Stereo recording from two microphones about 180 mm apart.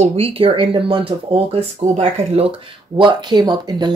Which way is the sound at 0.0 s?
35° right (ahead or behind).